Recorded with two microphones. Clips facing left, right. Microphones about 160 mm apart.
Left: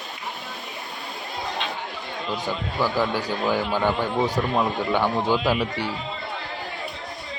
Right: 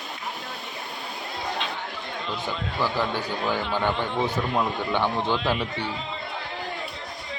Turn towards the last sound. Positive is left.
turn(degrees=10)  # may be behind; listen again after turning